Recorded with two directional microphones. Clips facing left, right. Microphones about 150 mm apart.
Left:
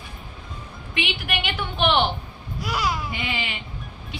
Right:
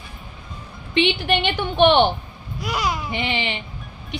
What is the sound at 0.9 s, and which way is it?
A woman's voice, 30° right (ahead or behind).